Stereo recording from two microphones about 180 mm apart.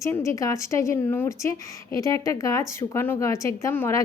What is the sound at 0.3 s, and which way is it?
A woman's voice, 15° left (ahead or behind).